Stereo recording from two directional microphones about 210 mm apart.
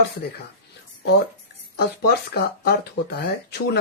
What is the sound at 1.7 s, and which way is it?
Speech, 50° left (ahead or behind).